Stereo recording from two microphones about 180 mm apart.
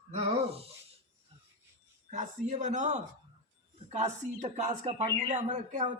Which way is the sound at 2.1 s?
40° right (ahead or behind).